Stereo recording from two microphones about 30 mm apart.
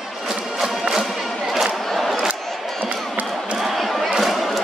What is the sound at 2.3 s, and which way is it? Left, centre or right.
Crowd, right.